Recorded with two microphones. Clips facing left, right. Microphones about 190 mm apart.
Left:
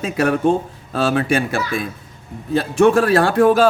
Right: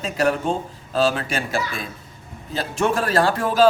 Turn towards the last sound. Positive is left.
turn(degrees=60)  # may be behind; listen again after turning